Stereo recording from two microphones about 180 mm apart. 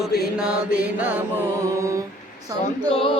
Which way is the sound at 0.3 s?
5° right (ahead or behind).